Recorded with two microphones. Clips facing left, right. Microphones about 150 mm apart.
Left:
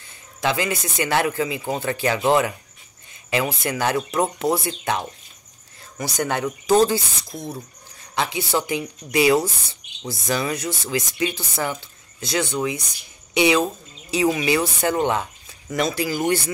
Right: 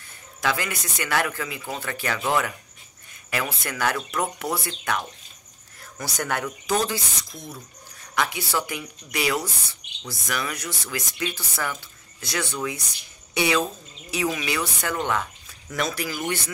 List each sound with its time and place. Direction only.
0.4 s speech: 25° left (ahead or behind)